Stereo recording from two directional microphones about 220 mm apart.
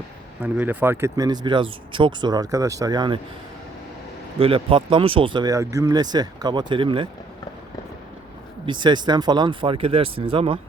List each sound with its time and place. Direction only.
0.4 s speech: 5° right (ahead or behind)
4.4 s speech: 25° right (ahead or behind)
8.6 s speech: 20° right (ahead or behind)